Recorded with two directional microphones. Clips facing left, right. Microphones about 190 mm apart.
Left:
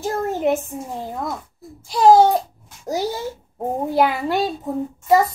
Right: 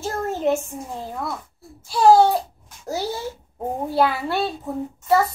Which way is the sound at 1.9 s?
20° left (ahead or behind).